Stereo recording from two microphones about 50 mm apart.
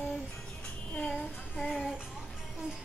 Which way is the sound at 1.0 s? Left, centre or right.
Left.